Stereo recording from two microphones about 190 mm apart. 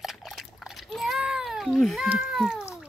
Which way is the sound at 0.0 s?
Centre (ahead or behind).